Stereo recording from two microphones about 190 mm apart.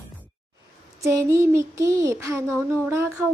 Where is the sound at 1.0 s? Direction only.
15° right (ahead or behind).